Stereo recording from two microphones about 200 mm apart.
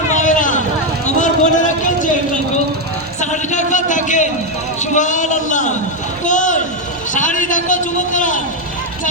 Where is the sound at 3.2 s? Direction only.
35° left (ahead or behind).